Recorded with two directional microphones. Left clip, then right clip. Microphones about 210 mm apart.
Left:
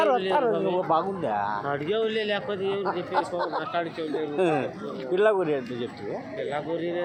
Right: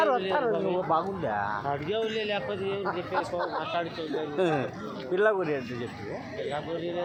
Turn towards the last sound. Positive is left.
turn(degrees=40)  # may be behind; listen again after turning